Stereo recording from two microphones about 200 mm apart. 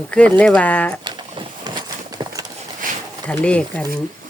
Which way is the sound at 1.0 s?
20° right (ahead or behind).